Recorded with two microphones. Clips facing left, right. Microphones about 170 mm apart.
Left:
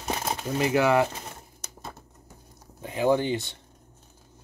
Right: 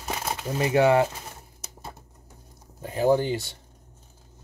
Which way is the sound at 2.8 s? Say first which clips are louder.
Right 2 dB; 40° right (ahead or behind).